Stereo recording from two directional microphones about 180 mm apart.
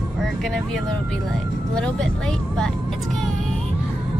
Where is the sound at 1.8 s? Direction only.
5° left (ahead or behind).